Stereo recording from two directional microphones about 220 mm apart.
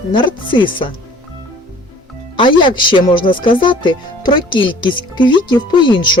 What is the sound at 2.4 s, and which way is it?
Speech, 20° left (ahead or behind).